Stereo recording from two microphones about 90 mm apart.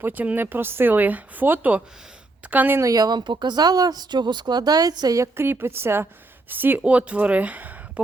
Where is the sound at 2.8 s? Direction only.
45° right (ahead or behind).